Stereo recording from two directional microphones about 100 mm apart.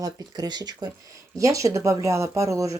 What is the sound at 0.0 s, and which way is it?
Speech, 40° right (ahead or behind).